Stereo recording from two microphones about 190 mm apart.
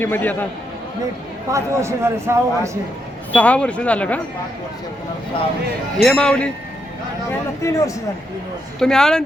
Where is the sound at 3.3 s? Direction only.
5° left (ahead or behind).